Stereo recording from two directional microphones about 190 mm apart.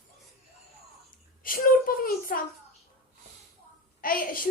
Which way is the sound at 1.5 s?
50° left (ahead or behind).